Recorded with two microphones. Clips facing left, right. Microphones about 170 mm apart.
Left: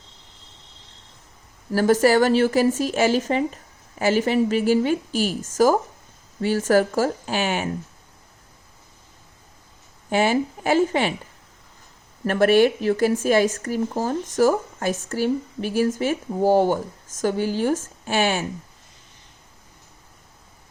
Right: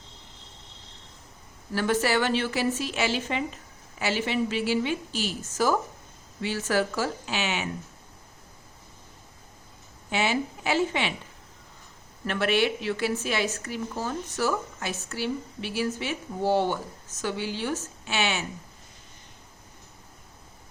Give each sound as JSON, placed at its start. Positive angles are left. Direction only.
{"t": 1.7, "sound": "a woman's voice", "side_deg": 45}
{"t": 10.1, "sound": "a woman's voice", "side_deg": 45}
{"t": 12.2, "sound": "a woman's voice", "side_deg": 45}